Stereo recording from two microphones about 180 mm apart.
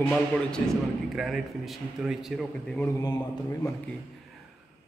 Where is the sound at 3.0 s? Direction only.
20° left (ahead or behind).